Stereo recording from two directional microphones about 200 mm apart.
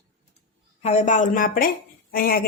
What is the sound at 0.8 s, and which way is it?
A woman's voice, 35° left (ahead or behind).